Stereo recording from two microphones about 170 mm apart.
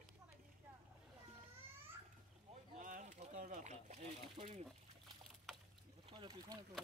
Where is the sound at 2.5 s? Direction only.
50° right (ahead or behind).